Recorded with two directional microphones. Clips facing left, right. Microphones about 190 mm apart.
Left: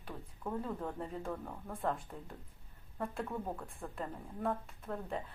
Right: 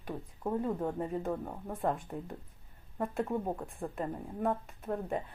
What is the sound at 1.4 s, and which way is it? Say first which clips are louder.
Speech: right 4 dB; 30° right (ahead or behind).